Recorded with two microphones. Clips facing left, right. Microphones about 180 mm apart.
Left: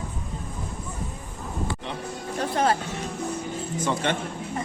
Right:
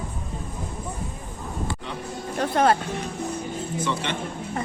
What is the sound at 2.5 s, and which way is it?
Music, 60° right (ahead or behind).